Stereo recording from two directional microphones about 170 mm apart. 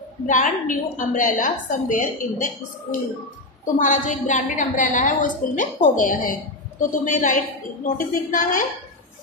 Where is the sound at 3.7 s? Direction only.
50° left (ahead or behind).